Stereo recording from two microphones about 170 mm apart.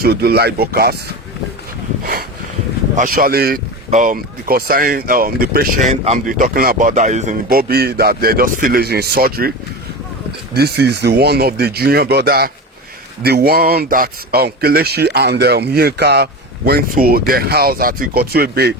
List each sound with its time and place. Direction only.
0.0 s a man's voice: 70° right (ahead or behind)
2.9 s speech: 55° right (ahead or behind)
5.9 s speech: 45° right (ahead or behind)
7.6 s speech: 65° right (ahead or behind)
10.5 s a man's voice: 70° right (ahead or behind)